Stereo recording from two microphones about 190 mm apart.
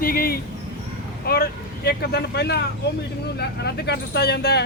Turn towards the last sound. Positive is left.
turn(degrees=60)  # may be behind; listen again after turning